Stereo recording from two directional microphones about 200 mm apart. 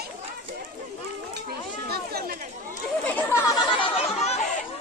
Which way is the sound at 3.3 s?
15° left (ahead or behind).